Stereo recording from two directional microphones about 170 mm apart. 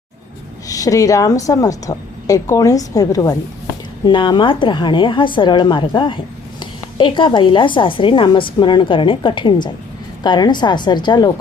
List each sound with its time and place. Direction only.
0.7 s a woman's voice: 20° left (ahead or behind)